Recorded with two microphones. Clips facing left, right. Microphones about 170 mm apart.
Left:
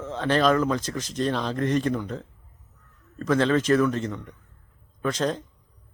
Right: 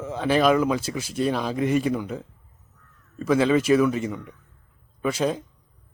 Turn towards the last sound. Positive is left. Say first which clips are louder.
# right 2 dB
turn(degrees=-10)  # may be behind; listen again after turning